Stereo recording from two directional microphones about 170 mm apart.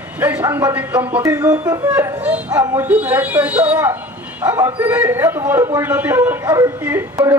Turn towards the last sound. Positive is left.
turn(degrees=-15)  # may be behind; listen again after turning